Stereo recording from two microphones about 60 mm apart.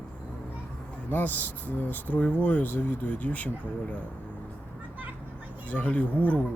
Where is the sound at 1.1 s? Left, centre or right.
Left.